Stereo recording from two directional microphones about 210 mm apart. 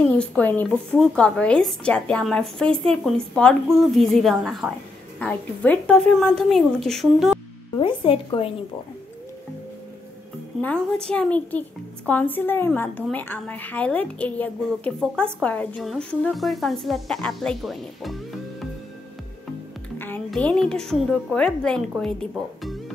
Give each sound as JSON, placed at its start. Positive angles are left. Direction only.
{"t": 0.0, "sound": "a woman's voice", "side_deg": 5}
{"t": 7.8, "sound": "a woman's voice", "side_deg": 25}
{"t": 10.6, "sound": "a woman's voice", "side_deg": 5}
{"t": 20.0, "sound": "a woman's voice", "side_deg": 5}